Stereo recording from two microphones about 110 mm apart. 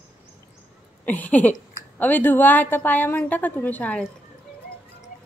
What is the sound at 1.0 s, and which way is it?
A woman's voice, 15° left (ahead or behind).